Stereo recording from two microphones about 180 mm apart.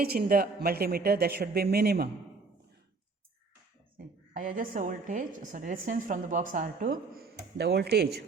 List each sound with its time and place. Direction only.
0.0 s a man's voice: 55° right (ahead or behind)
3.9 s a woman's voice: 50° right (ahead or behind)